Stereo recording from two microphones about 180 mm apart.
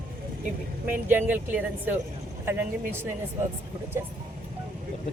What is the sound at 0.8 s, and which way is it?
A woman's voice, 10° right (ahead or behind).